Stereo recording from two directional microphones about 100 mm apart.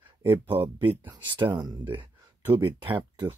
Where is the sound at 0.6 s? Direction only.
50° right (ahead or behind).